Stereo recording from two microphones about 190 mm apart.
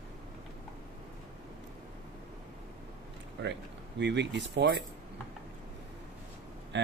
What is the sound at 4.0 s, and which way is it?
Speech, 65° right (ahead or behind).